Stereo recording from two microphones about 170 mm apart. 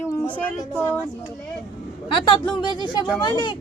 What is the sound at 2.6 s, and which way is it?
Speech, 25° left (ahead or behind).